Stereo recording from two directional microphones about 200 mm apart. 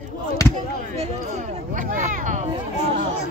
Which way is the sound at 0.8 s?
35° right (ahead or behind).